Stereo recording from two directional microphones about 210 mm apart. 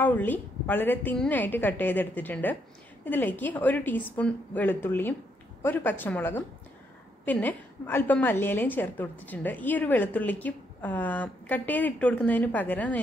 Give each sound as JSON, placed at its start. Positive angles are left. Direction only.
{"t": 0.0, "sound": "a woman's voice", "side_deg": 10}